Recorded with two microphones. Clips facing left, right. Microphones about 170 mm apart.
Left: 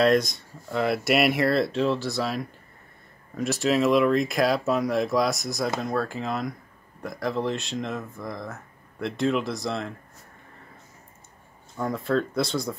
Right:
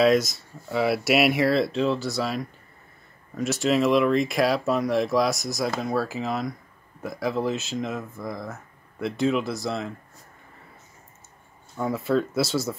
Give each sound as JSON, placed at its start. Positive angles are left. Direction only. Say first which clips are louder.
{"t": 0.0, "sound": "speech", "louder": "right 1 dB", "side_deg": 0}
{"t": 11.7, "sound": "speech", "louder": "right 1 dB", "side_deg": -5}